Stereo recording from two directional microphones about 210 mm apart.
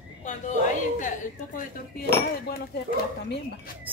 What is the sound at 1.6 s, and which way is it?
Cutlery, 45° left (ahead or behind).